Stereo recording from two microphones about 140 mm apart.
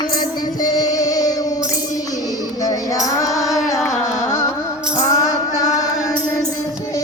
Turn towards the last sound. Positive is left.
turn(degrees=20)  # may be behind; listen again after turning